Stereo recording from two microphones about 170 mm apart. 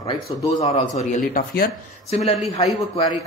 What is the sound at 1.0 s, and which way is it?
Speech, 50° left (ahead or behind).